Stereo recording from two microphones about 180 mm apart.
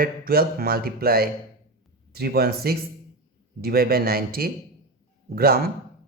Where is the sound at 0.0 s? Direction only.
55° right (ahead or behind).